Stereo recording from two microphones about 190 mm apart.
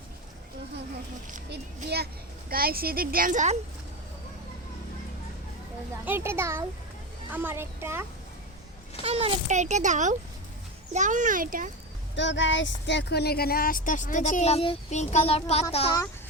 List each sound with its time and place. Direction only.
1.5 s a child's voice: 60° right (ahead or behind); by 3.6 s 40° right (ahead or behind)
6.1 s a child's voice: 10° right (ahead or behind)
9.0 s a child's voice: 30° right (ahead or behind)
12.1 s speech: 70° left (ahead or behind); by 15.6 s 35° left (ahead or behind)